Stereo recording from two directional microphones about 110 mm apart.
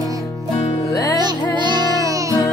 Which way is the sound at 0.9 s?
30° left (ahead or behind).